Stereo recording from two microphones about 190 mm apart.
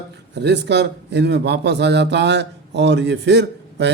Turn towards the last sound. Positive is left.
turn(degrees=-65)  # may be behind; listen again after turning